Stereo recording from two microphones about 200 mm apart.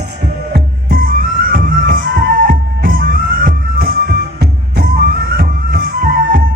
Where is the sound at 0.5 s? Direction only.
50° right (ahead or behind).